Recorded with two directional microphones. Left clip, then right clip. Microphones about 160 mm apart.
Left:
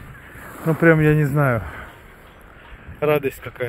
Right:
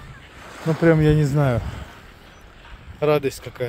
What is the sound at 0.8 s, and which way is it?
Speech, 15° right (ahead or behind).